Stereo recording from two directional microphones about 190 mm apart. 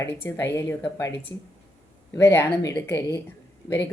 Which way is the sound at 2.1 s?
15° left (ahead or behind).